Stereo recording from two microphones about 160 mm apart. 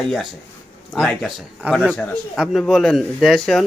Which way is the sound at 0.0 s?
Centre (ahead or behind).